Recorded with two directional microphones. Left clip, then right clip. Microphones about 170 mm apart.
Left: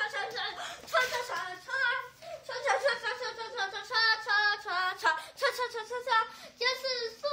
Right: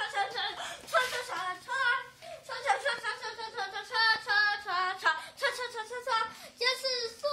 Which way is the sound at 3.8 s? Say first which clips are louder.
Even; 90° left.